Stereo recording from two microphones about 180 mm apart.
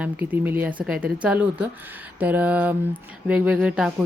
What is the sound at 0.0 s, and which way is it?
A woman's voice, 10° right (ahead or behind).